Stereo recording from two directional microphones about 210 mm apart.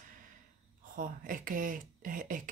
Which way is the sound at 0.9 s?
40° right (ahead or behind).